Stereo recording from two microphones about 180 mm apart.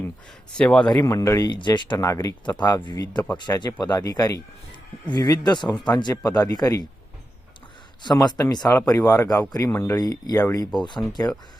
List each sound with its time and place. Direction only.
0.5 s a man's voice: 5° left (ahead or behind)
0.9 s speech: 15° left (ahead or behind)
8.0 s speech: 25° left (ahead or behind)